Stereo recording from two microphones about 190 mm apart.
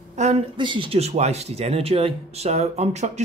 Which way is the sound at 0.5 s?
25° right (ahead or behind).